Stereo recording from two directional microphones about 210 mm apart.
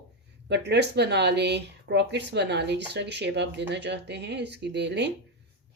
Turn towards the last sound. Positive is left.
turn(degrees=-55)  # may be behind; listen again after turning